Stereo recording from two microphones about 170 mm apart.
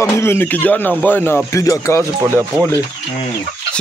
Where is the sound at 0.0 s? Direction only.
15° left (ahead or behind).